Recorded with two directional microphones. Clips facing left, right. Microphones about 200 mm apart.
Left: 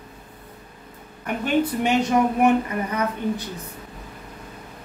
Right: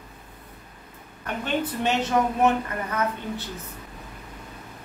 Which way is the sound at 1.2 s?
10° left (ahead or behind).